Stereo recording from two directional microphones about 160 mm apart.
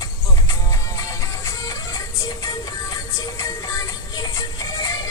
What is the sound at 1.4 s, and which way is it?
Music, 20° left (ahead or behind).